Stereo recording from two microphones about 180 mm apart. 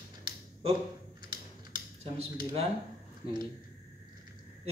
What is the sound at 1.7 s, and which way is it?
Computer keyboard, 30° right (ahead or behind).